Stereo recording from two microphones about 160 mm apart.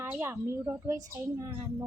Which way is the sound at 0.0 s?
15° right (ahead or behind).